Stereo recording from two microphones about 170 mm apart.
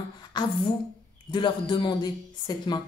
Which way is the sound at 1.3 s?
25° left (ahead or behind).